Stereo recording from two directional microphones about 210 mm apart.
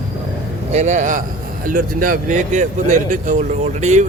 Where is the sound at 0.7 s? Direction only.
35° right (ahead or behind).